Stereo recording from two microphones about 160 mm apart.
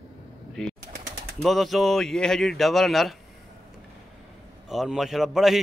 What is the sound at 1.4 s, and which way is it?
Speech, centre (ahead or behind).